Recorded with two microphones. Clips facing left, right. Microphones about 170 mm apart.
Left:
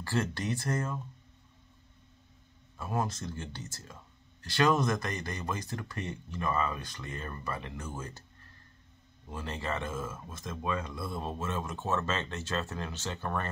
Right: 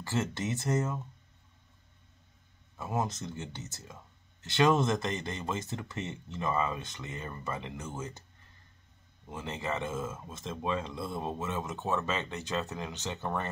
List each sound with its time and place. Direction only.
0.0 s speech: 20° right (ahead or behind)
2.8 s speech: 20° right (ahead or behind)
9.3 s speech: 20° right (ahead or behind)